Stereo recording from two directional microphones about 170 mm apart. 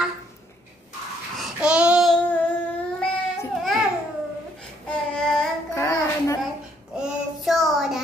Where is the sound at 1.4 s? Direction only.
5° right (ahead or behind).